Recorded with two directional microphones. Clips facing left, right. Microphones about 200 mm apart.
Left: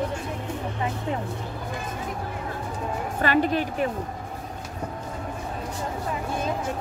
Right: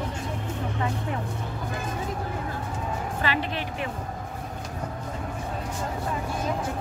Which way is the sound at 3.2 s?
45° left (ahead or behind).